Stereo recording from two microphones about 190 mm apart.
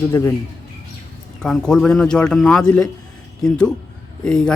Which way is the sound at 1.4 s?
5° left (ahead or behind).